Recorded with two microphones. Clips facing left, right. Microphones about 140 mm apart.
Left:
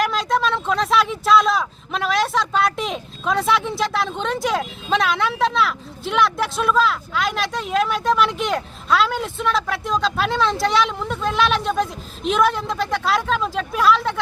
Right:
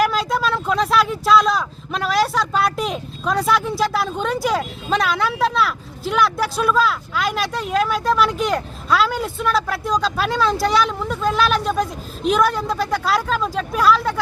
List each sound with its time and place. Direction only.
0.0 s speech: 5° right (ahead or behind)